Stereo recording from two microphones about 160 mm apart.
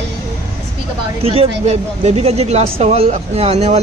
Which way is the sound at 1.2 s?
40° right (ahead or behind).